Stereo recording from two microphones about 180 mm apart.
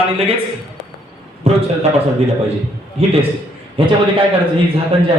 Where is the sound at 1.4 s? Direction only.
35° right (ahead or behind).